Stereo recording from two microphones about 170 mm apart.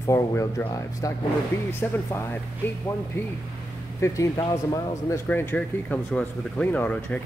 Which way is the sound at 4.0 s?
20° left (ahead or behind).